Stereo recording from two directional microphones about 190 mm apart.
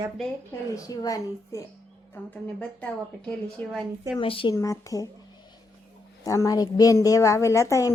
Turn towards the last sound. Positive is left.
turn(degrees=15)  # may be behind; listen again after turning